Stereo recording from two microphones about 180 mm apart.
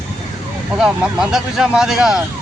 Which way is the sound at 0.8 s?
5° right (ahead or behind).